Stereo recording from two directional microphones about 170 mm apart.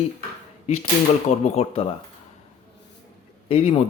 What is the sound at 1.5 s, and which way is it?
Speech, 35° left (ahead or behind).